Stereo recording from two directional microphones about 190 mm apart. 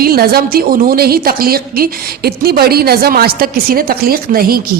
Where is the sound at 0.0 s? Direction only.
55° right (ahead or behind).